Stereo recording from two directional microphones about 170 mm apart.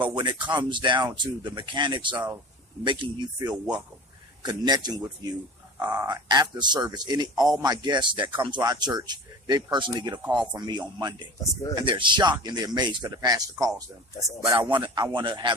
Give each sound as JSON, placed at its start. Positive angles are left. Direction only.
{"t": 0.1, "sound": "speech", "side_deg": -25}
{"t": 3.5, "sound": "speech", "side_deg": -5}
{"t": 4.4, "sound": "speech", "side_deg": -25}